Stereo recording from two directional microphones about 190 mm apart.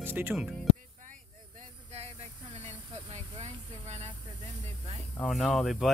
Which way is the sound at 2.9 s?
35° right (ahead or behind).